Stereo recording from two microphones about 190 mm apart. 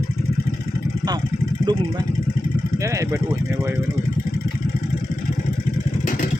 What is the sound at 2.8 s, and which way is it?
Speech, 15° right (ahead or behind).